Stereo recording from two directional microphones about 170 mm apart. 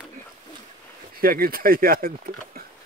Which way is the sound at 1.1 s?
60° right (ahead or behind).